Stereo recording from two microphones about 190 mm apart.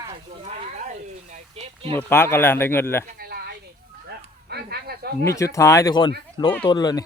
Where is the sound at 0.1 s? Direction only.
40° right (ahead or behind).